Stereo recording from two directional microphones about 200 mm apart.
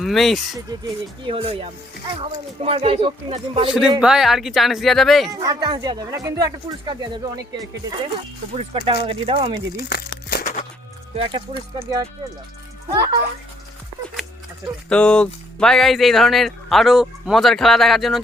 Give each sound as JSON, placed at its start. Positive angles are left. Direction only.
{"t": 0.0, "sound": "speech", "side_deg": 0}
{"t": 1.3, "sound": "speech", "side_deg": -30}
{"t": 3.7, "sound": "speech", "side_deg": -5}
{"t": 5.3, "sound": "speech", "side_deg": -20}
{"t": 8.5, "sound": "speech", "side_deg": -30}
{"t": 9.9, "sound": "a sound", "side_deg": 50}
{"t": 11.1, "sound": "speech", "side_deg": -25}
{"t": 14.8, "sound": "speech", "side_deg": 5}